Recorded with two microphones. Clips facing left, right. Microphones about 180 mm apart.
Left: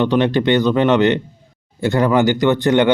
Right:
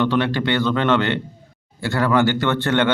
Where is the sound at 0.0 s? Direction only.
20° left (ahead or behind).